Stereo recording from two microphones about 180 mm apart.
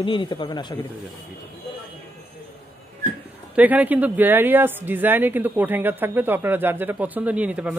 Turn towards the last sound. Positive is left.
turn(degrees=-5)  # may be behind; listen again after turning